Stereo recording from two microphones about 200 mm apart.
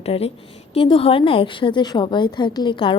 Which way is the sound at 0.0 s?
30° left (ahead or behind).